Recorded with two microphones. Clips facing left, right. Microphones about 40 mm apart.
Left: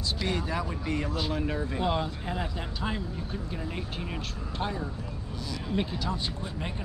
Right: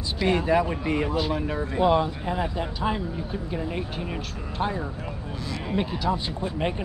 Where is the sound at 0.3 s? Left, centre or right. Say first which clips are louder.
Right 12 dB; right.